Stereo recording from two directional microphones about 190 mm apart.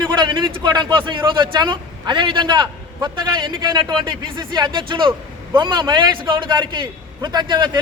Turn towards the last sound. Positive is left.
turn(degrees=-20)  # may be behind; listen again after turning